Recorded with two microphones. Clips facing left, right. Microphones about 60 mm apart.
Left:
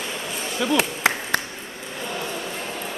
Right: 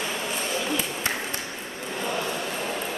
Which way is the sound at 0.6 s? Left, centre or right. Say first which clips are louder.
Left 6 dB; left.